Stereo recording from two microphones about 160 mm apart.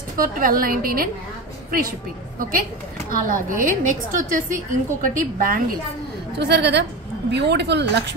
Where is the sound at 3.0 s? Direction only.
60° right (ahead or behind).